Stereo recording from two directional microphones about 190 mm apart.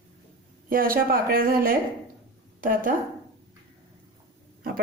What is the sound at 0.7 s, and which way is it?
Speech, 50° right (ahead or behind).